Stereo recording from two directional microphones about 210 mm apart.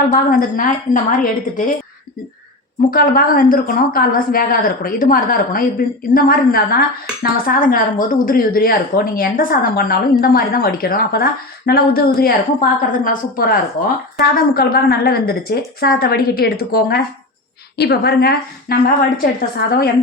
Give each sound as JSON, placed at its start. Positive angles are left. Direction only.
{"t": 0.1, "sound": "a woman's voice", "side_deg": 40}
{"t": 2.9, "sound": "a woman's voice", "side_deg": 45}